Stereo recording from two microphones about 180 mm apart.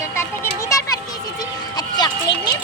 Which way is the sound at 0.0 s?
15° left (ahead or behind).